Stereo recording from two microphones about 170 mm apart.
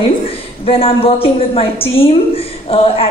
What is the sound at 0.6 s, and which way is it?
A woman's voice, 35° left (ahead or behind).